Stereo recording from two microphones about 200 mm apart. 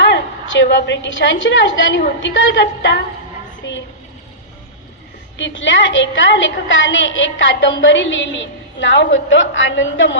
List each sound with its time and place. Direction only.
0.0 s a woman's voice: 65° left (ahead or behind)
5.4 s a woman's voice: 65° left (ahead or behind)